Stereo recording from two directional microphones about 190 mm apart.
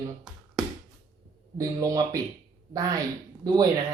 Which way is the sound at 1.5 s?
15° right (ahead or behind).